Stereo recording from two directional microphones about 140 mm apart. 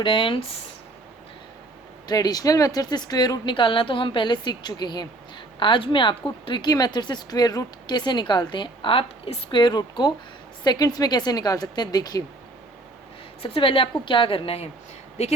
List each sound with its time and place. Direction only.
0.0 s speech: 35° left (ahead or behind)
2.0 s a woman's voice: 30° left (ahead or behind)
13.4 s speech: 40° left (ahead or behind)